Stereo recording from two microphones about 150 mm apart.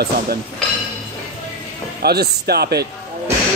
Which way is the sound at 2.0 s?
90° right.